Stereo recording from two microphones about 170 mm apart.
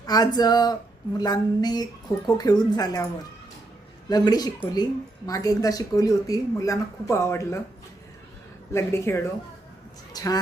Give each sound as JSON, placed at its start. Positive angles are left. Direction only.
{"t": 0.0, "sound": "speech", "side_deg": 20}
{"t": 4.1, "sound": "speech", "side_deg": 25}
{"t": 8.7, "sound": "speech", "side_deg": 15}
{"t": 10.1, "sound": "a sound", "side_deg": 25}